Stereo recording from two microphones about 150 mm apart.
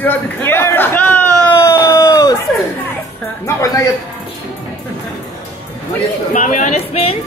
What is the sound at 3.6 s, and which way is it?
Speech, 20° left (ahead or behind).